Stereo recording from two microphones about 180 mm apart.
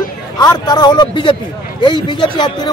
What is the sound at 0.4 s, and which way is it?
A man's voice, 20° left (ahead or behind).